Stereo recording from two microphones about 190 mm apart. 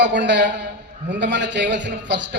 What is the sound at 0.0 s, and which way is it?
A man's voice, 65° right (ahead or behind).